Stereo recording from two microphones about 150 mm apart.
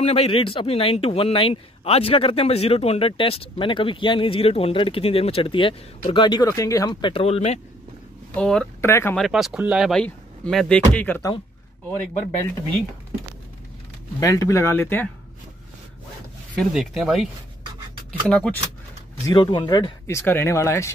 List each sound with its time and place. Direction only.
0.0 s speech: 45° left (ahead or behind)
8.4 s speech: 5° left (ahead or behind)
8.8 s speech: 15° left (ahead or behind)
9.1 s speech: centre (ahead or behind)
14.2 s speech: 20° left (ahead or behind)
16.5 s speech: centre (ahead or behind)
18.3 s speech: 5° left (ahead or behind)
19.2 s speech: 30° left (ahead or behind)
20.1 s speech: 15° left (ahead or behind)